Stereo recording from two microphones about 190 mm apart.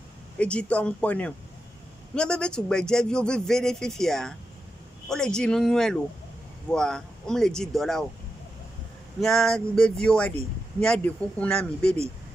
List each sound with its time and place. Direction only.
0.4 s a man's voice: 5° left (ahead or behind)
9.2 s a man's voice: centre (ahead or behind)